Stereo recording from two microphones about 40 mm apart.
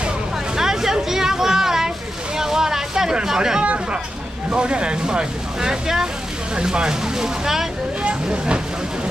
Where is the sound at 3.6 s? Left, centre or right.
Right.